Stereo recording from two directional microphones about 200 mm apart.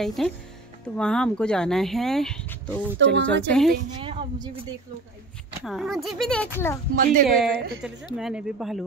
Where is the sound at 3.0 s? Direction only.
65° right (ahead or behind).